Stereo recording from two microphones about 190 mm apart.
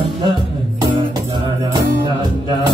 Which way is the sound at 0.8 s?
25° right (ahead or behind).